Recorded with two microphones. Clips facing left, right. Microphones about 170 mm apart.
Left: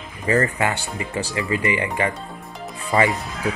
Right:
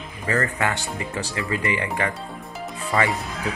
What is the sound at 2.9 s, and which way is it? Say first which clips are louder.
Speech: left 4 dB; 20° left (ahead or behind).